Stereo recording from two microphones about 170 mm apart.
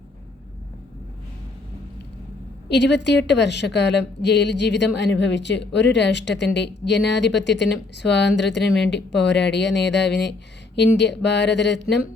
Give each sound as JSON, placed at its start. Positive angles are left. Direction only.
{"t": 2.6, "sound": "a woman's voice", "side_deg": 90}